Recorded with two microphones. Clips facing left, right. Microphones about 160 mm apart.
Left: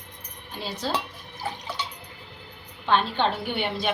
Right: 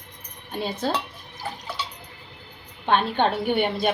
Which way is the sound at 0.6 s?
55° right (ahead or behind).